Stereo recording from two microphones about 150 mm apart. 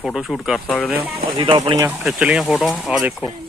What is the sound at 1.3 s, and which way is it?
Speech, 35° right (ahead or behind).